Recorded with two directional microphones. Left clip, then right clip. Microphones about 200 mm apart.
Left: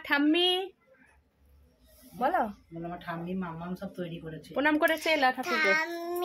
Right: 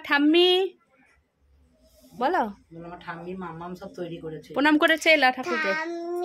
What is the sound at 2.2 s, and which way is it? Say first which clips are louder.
Speech: right 3 dB; 35° right (ahead or behind).